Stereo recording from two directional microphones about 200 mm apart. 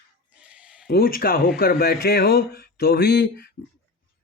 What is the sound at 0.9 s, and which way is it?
Speech, 45° left (ahead or behind).